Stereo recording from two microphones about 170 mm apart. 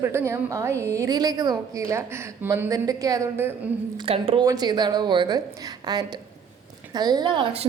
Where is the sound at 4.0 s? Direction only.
35° right (ahead or behind).